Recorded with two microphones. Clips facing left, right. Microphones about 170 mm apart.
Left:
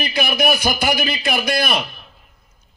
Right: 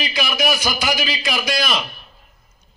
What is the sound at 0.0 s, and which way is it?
A man's voice, 55° left (ahead or behind).